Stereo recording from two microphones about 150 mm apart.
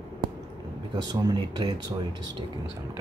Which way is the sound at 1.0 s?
25° right (ahead or behind).